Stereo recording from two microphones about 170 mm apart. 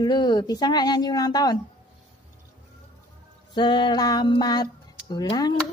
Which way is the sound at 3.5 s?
25° left (ahead or behind).